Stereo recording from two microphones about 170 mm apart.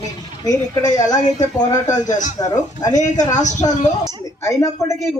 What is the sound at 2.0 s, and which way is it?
Speech, 45° left (ahead or behind).